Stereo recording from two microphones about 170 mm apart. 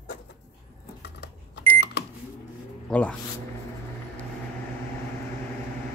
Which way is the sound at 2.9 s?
5° left (ahead or behind).